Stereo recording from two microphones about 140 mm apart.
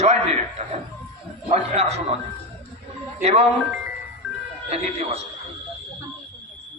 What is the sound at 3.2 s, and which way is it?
Speech, 50° right (ahead or behind).